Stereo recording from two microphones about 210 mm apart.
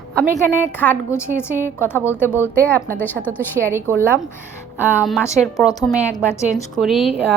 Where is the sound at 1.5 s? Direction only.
10° right (ahead or behind).